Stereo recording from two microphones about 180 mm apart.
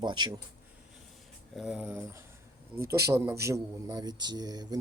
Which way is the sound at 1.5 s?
5° right (ahead or behind).